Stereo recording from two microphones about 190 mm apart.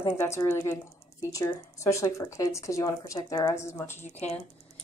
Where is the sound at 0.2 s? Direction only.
15° left (ahead or behind).